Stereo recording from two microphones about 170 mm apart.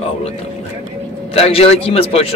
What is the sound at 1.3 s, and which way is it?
Speech, 35° left (ahead or behind).